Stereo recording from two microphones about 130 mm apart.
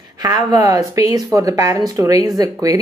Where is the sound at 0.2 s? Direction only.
30° right (ahead or behind).